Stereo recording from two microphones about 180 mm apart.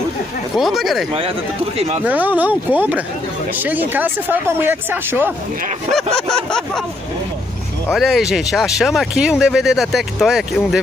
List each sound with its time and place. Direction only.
0.6 s speech: centre (ahead or behind)
1.8 s speech: 35° right (ahead or behind)
2.0 s speech: 10° right (ahead or behind)
5.9 s speech: 5° left (ahead or behind)
7.9 s speech: centre (ahead or behind)